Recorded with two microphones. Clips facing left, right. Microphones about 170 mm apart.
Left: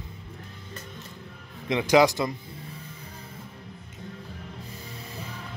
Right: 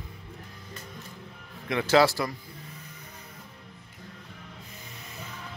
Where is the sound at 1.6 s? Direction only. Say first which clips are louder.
Left 2 dB; 15° left (ahead or behind).